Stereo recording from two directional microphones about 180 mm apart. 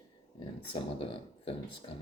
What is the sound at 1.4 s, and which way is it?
Speech, 30° left (ahead or behind).